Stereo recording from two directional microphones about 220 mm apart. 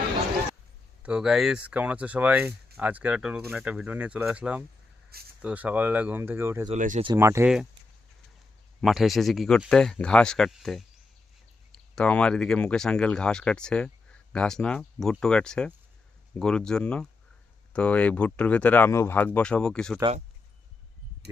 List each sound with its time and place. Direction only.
1.0 s speech: 5° right (ahead or behind)
6.7 s speech: 35° right (ahead or behind)
7.0 s speech: 15° right (ahead or behind)
8.8 s speech: centre (ahead or behind)
20.0 s speech: 25° right (ahead or behind)